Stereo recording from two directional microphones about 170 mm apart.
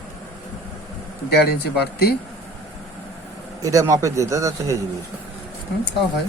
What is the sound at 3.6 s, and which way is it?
A man's voice, 20° right (ahead or behind).